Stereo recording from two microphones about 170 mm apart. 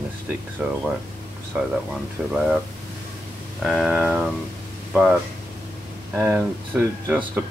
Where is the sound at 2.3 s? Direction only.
5° right (ahead or behind).